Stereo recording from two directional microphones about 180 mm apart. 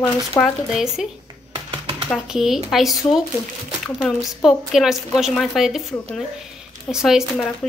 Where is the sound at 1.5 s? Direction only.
30° right (ahead or behind).